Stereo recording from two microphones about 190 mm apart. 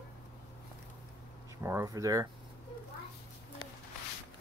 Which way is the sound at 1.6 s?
15° right (ahead or behind).